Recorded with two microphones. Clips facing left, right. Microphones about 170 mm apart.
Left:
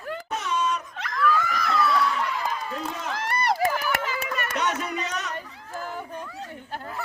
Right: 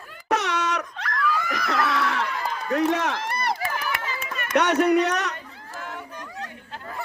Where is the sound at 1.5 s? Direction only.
75° right (ahead or behind).